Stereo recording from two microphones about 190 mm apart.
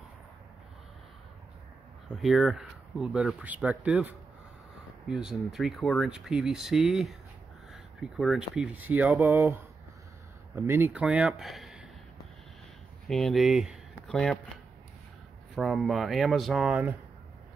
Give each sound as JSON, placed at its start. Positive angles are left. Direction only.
{"t": 2.2, "sound": "speech", "side_deg": 0}
{"t": 13.1, "sound": "speech", "side_deg": 0}
{"t": 15.5, "sound": "speech", "side_deg": 0}